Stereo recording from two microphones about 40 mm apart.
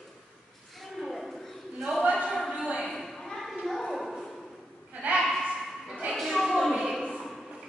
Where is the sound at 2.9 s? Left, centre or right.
Centre.